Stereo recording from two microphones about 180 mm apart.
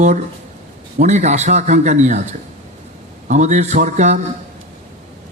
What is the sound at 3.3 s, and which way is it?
Speech, 40° right (ahead or behind).